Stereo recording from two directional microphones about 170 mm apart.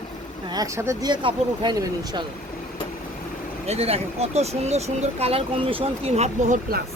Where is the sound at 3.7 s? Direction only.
35° right (ahead or behind).